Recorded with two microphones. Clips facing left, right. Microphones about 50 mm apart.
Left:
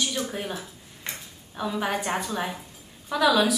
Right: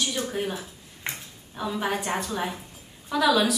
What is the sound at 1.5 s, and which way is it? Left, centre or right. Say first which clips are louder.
A woman's voice: even; centre.